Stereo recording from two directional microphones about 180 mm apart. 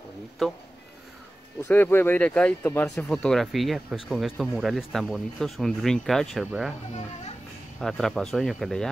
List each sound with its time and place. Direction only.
1.6 s speech: 10° left (ahead or behind); by 6.7 s 5° right (ahead or behind)
7.8 s speech: centre (ahead or behind)